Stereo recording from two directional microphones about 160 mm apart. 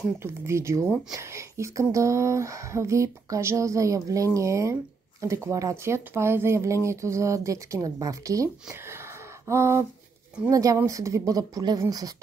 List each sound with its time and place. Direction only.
0.2 s speech: 15° right (ahead or behind)
9.5 s speech: 15° right (ahead or behind)